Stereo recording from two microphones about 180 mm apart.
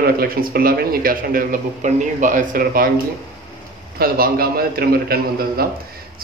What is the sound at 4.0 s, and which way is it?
Speech, 55° right (ahead or behind).